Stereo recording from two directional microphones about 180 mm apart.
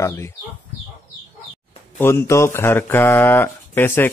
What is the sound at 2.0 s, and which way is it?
Speech, 15° left (ahead or behind).